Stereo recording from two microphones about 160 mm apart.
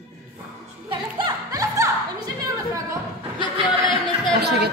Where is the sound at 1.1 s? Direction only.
25° right (ahead or behind).